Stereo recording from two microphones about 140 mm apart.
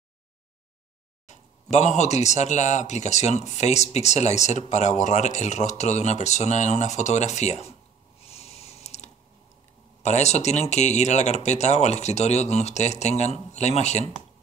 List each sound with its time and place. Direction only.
1.2 s speech: 55° left (ahead or behind)
8.2 s a sound: 50° left (ahead or behind)
10.0 s speech: 55° left (ahead or behind)